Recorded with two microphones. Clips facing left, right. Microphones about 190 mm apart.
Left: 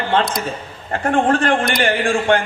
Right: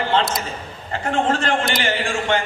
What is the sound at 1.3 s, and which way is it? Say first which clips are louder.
A man's voice: left 4 dB; 55° left (ahead or behind).